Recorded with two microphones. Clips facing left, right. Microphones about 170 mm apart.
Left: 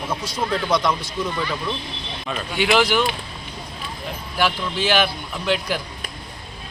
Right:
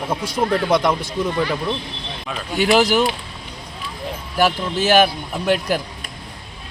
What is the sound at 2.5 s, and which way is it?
Speech, 40° right (ahead or behind).